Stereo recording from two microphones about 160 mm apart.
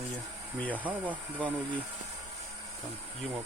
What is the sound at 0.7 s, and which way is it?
Speech, 10° right (ahead or behind).